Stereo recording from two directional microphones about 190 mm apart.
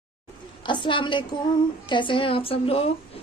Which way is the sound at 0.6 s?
25° left (ahead or behind).